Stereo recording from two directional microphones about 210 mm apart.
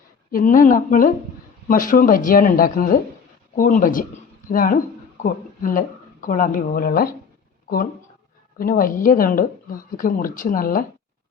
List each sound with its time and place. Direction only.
0.3 s speech: 40° left (ahead or behind)
8.5 s speech: 45° left (ahead or behind)